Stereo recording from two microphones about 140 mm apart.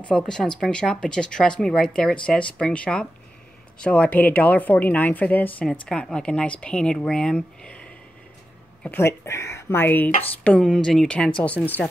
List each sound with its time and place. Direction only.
0.1 s a woman's voice: 5° left (ahead or behind)